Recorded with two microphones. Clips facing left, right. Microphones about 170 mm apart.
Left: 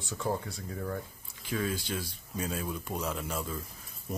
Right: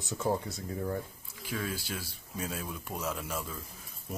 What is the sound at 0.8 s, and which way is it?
Speech, 15° right (ahead or behind).